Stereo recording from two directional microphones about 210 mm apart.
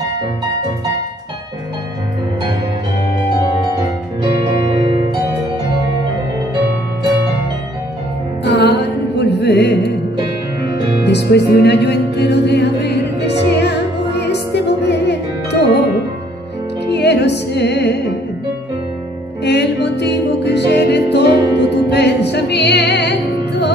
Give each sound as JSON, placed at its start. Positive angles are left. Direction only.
{"t": 8.5, "sound": "music", "side_deg": 50}
{"t": 14.2, "sound": "music", "side_deg": 55}
{"t": 16.9, "sound": "music", "side_deg": 55}
{"t": 19.4, "sound": "music", "side_deg": 55}